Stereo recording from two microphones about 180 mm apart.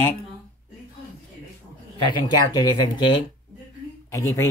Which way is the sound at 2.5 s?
20° left (ahead or behind).